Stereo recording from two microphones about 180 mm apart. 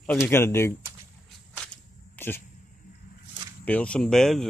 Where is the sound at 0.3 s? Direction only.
15° left (ahead or behind).